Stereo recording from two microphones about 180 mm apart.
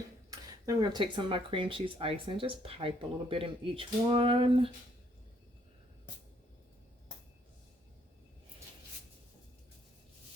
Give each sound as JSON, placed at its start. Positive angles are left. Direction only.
{"t": 0.3, "sound": "speech", "side_deg": -20}